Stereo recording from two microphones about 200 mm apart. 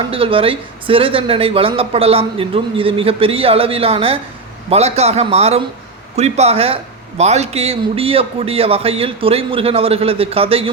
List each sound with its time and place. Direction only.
0.1 s a man's voice: 25° right (ahead or behind)